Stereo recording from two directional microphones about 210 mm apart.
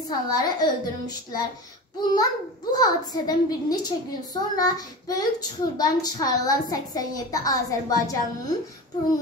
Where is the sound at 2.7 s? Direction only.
20° left (ahead or behind).